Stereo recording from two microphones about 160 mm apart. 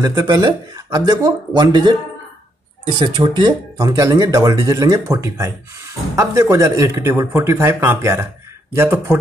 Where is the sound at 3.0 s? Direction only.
30° right (ahead or behind).